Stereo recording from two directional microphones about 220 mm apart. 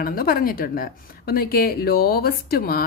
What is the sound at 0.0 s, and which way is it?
A woman's voice, 40° left (ahead or behind).